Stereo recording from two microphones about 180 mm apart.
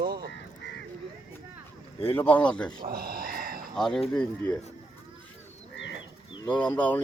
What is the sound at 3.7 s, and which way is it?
Speech, centre (ahead or behind).